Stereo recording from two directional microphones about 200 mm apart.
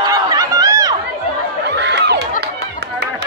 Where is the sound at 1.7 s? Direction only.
55° right (ahead or behind).